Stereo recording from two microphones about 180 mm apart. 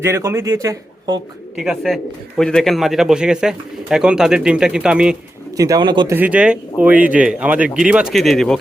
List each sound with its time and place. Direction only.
0.0 s speech: 15° right (ahead or behind)
1.5 s speech: centre (ahead or behind)
5.5 s speech: 20° right (ahead or behind)
6.1 s speech: 10° right (ahead or behind)